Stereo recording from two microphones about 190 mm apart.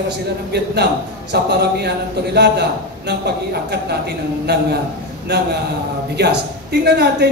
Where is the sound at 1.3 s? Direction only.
60° right (ahead or behind).